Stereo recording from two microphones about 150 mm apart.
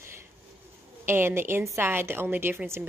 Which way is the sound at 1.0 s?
15° right (ahead or behind).